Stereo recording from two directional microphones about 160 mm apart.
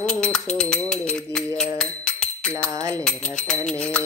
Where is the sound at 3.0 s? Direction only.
5° left (ahead or behind).